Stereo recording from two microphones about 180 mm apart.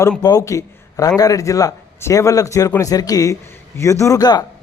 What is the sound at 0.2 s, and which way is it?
A man's voice, 20° left (ahead or behind).